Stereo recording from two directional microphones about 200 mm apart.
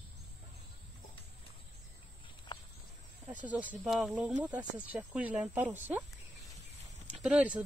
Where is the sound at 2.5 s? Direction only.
20° left (ahead or behind).